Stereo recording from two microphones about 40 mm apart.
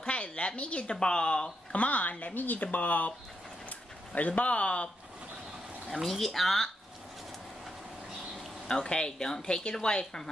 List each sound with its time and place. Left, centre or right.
0.0 s a woman's voice: left
1.8 s speech: left
5.9 s speech: centre
8.6 s speech: left